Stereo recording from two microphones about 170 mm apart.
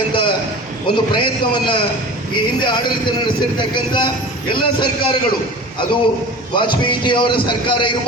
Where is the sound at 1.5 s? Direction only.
30° left (ahead or behind).